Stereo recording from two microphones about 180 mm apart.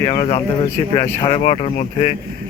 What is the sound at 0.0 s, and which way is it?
Speech, 30° left (ahead or behind).